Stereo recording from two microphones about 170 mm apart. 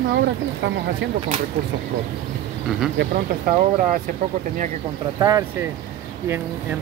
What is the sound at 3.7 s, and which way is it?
Speech, 50° right (ahead or behind).